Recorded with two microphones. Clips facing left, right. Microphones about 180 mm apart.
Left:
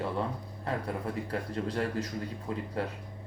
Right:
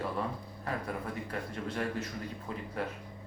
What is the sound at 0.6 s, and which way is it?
A man's voice, 30° left (ahead or behind).